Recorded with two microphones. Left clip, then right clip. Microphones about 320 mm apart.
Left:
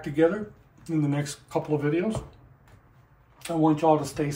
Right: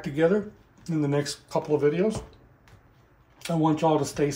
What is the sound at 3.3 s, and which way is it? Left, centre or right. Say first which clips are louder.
Speech: left 1 dB; right.